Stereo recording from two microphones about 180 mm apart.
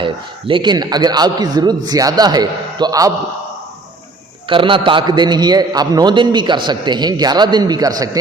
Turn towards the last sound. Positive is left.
turn(degrees=-20)  # may be behind; listen again after turning